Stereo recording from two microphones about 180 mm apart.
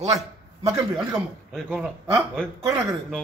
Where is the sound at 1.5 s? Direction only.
5° left (ahead or behind).